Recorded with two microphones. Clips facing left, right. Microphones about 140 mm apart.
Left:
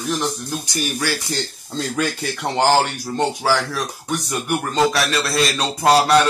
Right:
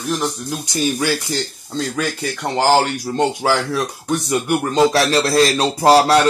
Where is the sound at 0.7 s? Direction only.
20° right (ahead or behind).